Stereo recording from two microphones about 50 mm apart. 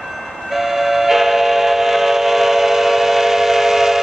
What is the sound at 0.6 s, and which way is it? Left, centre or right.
Train, centre.